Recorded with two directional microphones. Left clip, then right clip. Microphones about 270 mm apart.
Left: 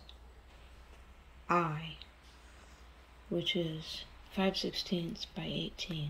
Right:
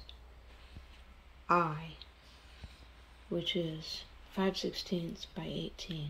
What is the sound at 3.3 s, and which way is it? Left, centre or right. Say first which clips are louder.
Speech: left 1 dB; centre.